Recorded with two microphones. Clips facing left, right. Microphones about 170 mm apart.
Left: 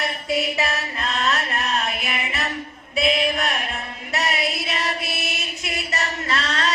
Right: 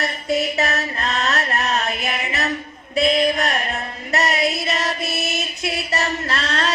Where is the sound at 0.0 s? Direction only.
45° right (ahead or behind).